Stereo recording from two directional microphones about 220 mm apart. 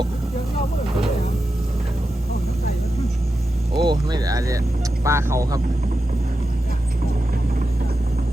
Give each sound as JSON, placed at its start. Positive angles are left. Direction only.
{"t": 3.8, "sound": "speech", "side_deg": -20}